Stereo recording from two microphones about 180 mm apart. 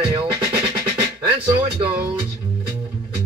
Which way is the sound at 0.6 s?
30° right (ahead or behind).